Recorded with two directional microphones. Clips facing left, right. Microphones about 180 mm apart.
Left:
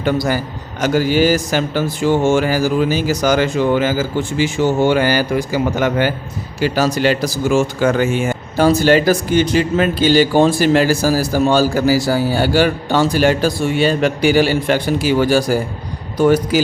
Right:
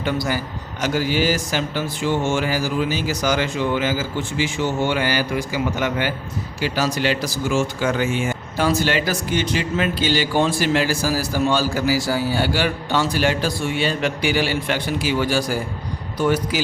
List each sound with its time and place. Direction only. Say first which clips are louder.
0.0 s speech: left 6 dB; 45° left (ahead or behind)